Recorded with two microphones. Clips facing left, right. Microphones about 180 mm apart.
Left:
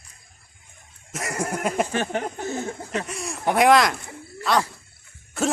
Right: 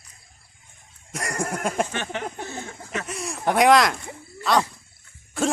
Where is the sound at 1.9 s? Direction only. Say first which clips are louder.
Left 4 dB; 40° left (ahead or behind).